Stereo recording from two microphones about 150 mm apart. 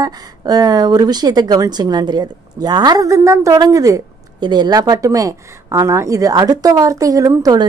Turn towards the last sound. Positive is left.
turn(degrees=-25)  # may be behind; listen again after turning